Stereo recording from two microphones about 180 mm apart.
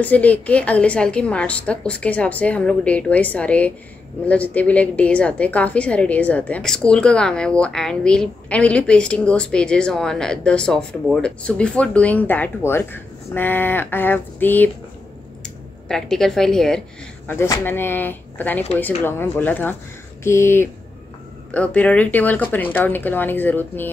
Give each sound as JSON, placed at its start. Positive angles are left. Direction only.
{"t": 0.0, "sound": "a woman's voice", "side_deg": 10}